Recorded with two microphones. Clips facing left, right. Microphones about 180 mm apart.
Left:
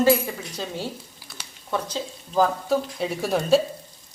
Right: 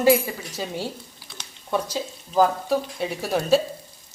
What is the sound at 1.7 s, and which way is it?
Speech, 10° right (ahead or behind).